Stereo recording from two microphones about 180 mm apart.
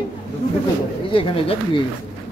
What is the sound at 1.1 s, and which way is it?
Speech, 30° left (ahead or behind).